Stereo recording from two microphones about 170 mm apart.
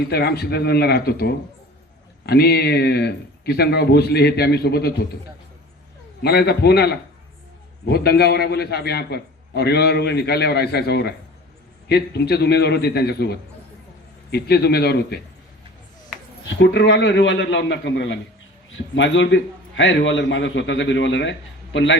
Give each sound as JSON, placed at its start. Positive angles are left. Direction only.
{"t": 0.1, "sound": "a man's voice", "side_deg": 70}
{"t": 6.2, "sound": "a man's voice", "side_deg": 70}
{"t": 16.5, "sound": "a man's voice", "side_deg": 90}